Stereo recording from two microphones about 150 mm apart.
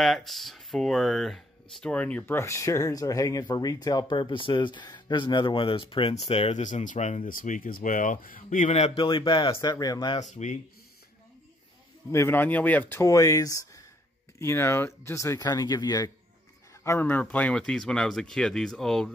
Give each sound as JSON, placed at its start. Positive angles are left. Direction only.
{"t": 0.0, "sound": "speech", "side_deg": 0}
{"t": 6.6, "sound": "speech", "side_deg": 55}
{"t": 10.3, "sound": "speech", "side_deg": 55}
{"t": 12.1, "sound": "speech", "side_deg": 15}
{"t": 16.8, "sound": "speech", "side_deg": 15}